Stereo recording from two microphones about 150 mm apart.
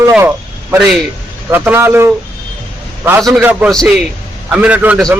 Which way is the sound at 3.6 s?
Centre (ahead or behind).